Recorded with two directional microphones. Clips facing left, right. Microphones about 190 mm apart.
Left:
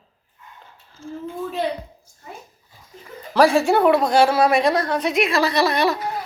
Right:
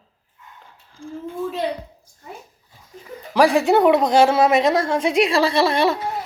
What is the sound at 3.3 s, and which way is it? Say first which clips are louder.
A woman's voice: even; 15° right (ahead or behind).